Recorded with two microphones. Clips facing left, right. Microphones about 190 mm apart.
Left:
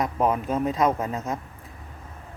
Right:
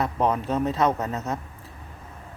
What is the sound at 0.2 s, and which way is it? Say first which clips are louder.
Speech: even; 5° left (ahead or behind).